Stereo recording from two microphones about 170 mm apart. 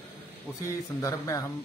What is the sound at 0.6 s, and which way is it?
Speech, 20° left (ahead or behind).